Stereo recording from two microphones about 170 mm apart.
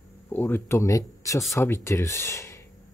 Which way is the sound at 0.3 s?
10° left (ahead or behind).